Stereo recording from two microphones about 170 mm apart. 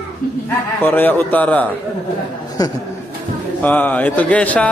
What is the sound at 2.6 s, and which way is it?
Speech, 20° left (ahead or behind).